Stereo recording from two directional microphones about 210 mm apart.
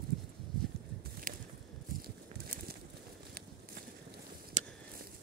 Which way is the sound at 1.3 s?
40° right (ahead or behind).